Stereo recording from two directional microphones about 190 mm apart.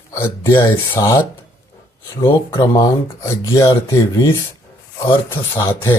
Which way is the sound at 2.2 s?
25° left (ahead or behind).